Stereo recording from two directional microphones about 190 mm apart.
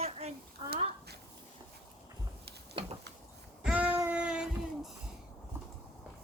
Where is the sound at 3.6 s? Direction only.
5° right (ahead or behind).